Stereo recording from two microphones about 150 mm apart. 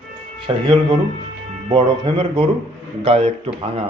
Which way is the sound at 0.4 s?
35° right (ahead or behind).